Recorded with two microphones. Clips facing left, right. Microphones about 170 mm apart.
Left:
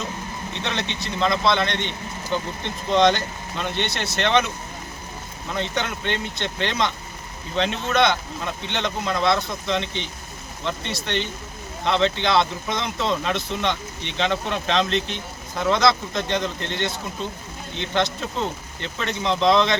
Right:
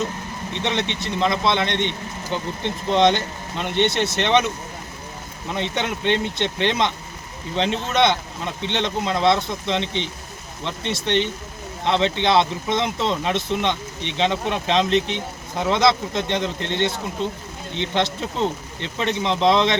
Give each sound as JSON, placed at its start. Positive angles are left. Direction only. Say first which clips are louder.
{"t": 0.6, "sound": "speech", "louder": "right 4 dB", "side_deg": -25}
{"t": 2.9, "sound": "speech", "louder": "even", "side_deg": -25}
{"t": 5.5, "sound": "speech", "louder": "right 1 dB", "side_deg": -25}